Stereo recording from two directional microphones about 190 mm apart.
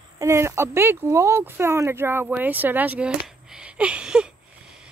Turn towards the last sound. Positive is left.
turn(degrees=-5)  # may be behind; listen again after turning